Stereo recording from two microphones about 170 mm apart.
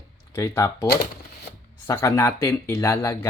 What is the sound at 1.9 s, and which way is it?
Speech, 15° left (ahead or behind).